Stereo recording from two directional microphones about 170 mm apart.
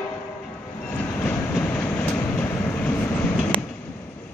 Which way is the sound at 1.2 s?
10° left (ahead or behind).